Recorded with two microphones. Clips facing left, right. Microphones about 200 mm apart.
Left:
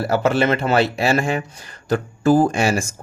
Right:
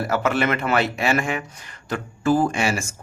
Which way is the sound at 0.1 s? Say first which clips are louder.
Left 5 dB; 30° left (ahead or behind).